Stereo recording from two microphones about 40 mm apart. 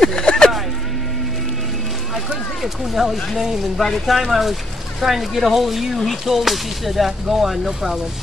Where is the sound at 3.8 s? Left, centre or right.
Centre.